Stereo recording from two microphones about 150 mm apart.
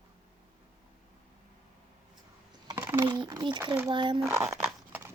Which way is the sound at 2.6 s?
20° right (ahead or behind).